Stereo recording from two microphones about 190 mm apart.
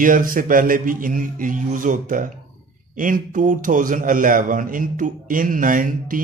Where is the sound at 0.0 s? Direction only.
45° right (ahead or behind).